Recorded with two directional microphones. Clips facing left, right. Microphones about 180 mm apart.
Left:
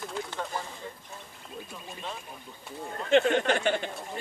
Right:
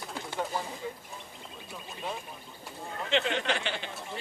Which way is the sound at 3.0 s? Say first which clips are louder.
Left 7 dB; 50° left (ahead or behind).